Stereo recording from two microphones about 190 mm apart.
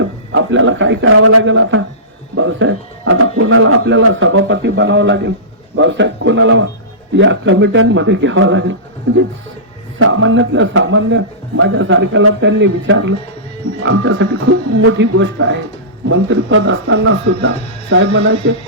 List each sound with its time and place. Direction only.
0.3 s a man's voice: 85° right
10.0 s speech: 85° right
13.7 s speech: 85° right